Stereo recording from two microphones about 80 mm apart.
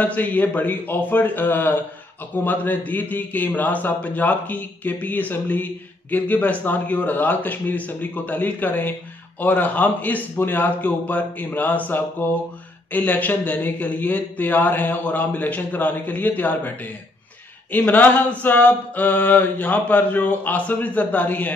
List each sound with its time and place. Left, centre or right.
0.0 s a man's voice: left